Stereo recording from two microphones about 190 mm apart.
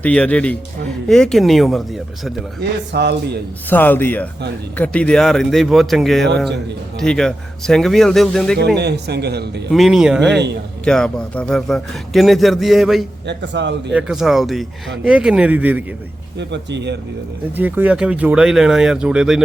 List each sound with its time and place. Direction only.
0.0 s a man's voice: 5° left (ahead or behind)
2.6 s a man's voice: 65° right (ahead or behind)
3.7 s a man's voice: 10° left (ahead or behind)
8.5 s a man's voice: 60° right (ahead or behind)
9.7 s speech: centre (ahead or behind)
10.3 s a man's voice: 65° right (ahead or behind)
10.8 s speech: 5° left (ahead or behind)
13.2 s a man's voice: 65° right (ahead or behind)
13.9 s speech: 5° right (ahead or behind)
16.4 s a man's voice: 65° right (ahead or behind)
17.6 s speech: 10° right (ahead or behind)